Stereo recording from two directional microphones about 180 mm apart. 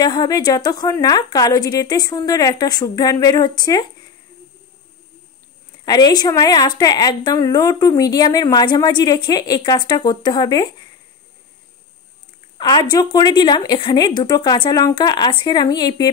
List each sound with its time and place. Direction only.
0.0 s a woman's voice: 20° left (ahead or behind)
5.9 s a woman's voice: 20° left (ahead or behind)
12.5 s a woman's voice: 25° left (ahead or behind)